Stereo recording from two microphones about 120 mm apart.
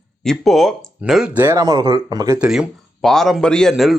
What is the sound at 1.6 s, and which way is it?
Speech, 35° right (ahead or behind).